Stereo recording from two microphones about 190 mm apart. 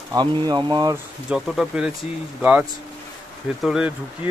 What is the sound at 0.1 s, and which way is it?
Speech, 20° right (ahead or behind).